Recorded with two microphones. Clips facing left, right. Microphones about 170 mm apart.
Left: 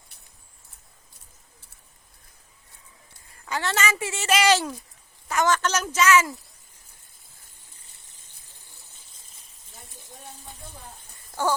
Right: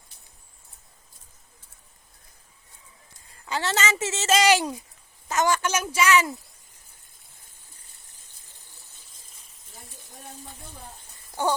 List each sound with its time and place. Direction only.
3.2 s a woman's voice: 20° right (ahead or behind)